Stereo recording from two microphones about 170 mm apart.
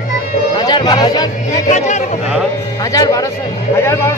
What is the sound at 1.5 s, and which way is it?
Speech, 45° left (ahead or behind).